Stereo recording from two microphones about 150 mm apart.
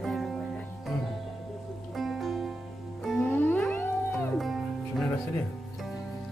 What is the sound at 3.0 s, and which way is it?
Music, 10° left (ahead or behind).